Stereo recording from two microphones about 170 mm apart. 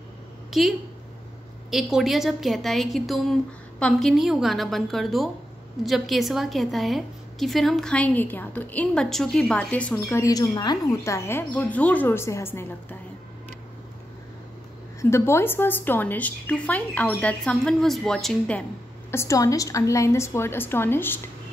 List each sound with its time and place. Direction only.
0.5 s a woman's voice: centre (ahead or behind)
10.0 s a woman's voice: 20° left (ahead or behind)
15.0 s a woman's voice: 15° left (ahead or behind)